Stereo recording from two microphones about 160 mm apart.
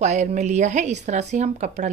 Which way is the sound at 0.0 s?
45° right (ahead or behind).